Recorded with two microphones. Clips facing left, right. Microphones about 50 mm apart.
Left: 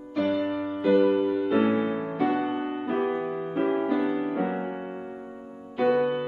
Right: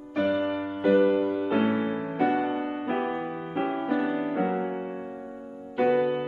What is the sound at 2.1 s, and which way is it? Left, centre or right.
Music, right.